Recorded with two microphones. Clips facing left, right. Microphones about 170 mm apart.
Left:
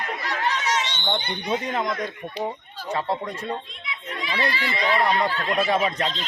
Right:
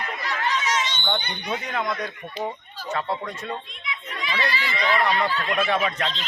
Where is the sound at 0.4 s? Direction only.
65° left (ahead or behind).